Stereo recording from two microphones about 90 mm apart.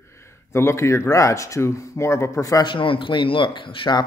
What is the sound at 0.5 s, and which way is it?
Speech, 30° left (ahead or behind).